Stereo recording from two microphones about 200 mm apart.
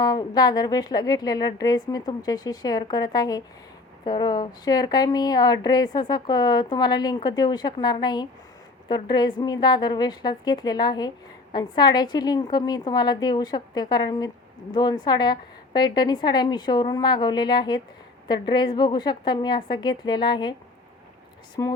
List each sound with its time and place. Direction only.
0.0 s a woman's voice: 20° left (ahead or behind)
21.6 s a woman's voice: 20° left (ahead or behind)